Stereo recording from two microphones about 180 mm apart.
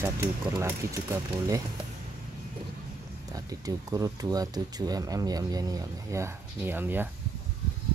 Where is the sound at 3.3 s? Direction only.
20° right (ahead or behind).